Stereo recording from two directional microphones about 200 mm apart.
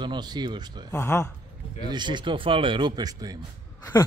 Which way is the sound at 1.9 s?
20° right (ahead or behind).